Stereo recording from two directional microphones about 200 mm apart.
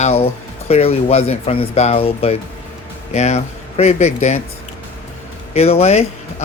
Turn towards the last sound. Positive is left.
turn(degrees=30)  # may be behind; listen again after turning